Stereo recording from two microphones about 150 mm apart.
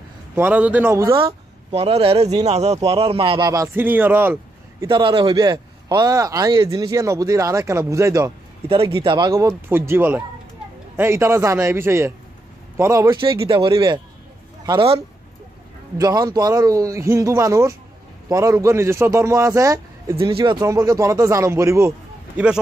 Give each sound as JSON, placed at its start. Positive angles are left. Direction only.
{"t": 0.4, "sound": "speech", "side_deg": -10}
{"t": 1.1, "sound": "speech", "side_deg": -40}
{"t": 3.4, "sound": "speech", "side_deg": -20}
{"t": 4.8, "sound": "a man's voice", "side_deg": -30}
{"t": 8.6, "sound": "speech", "side_deg": -35}
{"t": 13.1, "sound": "a man's voice", "side_deg": -35}
{"t": 16.0, "sound": "a man's voice", "side_deg": -25}
{"t": 20.2, "sound": "a man's voice", "side_deg": -35}